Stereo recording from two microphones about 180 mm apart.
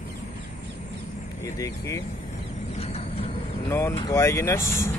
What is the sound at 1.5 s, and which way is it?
Speech, 15° left (ahead or behind).